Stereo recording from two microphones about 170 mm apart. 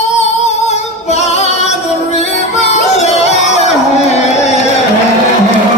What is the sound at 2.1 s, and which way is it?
Music, 40° left (ahead or behind).